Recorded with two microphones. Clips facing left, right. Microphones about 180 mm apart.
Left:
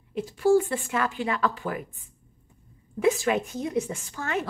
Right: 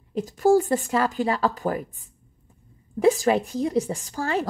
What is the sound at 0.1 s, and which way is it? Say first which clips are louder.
A woman's voice: right 2 dB; 40° right (ahead or behind).